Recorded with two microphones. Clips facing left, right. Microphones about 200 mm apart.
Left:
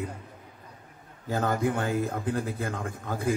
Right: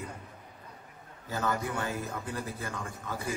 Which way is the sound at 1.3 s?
50° left (ahead or behind).